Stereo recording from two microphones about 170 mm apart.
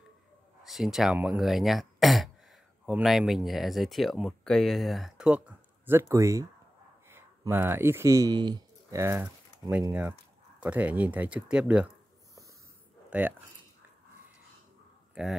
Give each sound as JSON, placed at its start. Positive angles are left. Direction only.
{"t": 0.7, "sound": "speech", "side_deg": 0}
{"t": 9.0, "sound": "speech", "side_deg": -10}
{"t": 13.1, "sound": "speech", "side_deg": -10}